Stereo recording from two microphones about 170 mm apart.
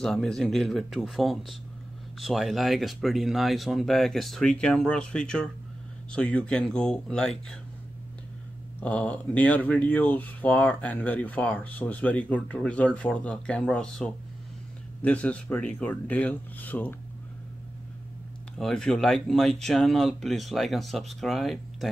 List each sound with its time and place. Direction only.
0.0 s speech: 5° left (ahead or behind)
8.8 s speech: 10° left (ahead or behind)
18.6 s speech: 5° left (ahead or behind)